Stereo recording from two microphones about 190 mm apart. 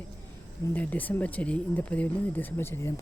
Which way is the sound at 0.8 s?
10° left (ahead or behind).